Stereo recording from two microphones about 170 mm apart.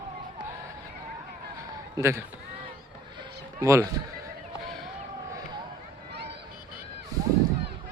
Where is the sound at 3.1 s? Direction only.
20° right (ahead or behind).